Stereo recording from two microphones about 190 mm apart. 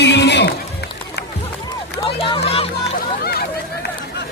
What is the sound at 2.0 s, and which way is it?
Run, 30° left (ahead or behind).